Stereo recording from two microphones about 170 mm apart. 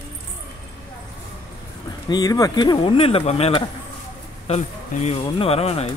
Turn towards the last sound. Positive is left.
turn(degrees=35)  # may be behind; listen again after turning